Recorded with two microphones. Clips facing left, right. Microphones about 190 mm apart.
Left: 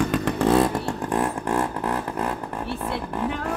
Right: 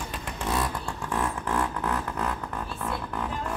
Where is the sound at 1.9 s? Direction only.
30° left (ahead or behind).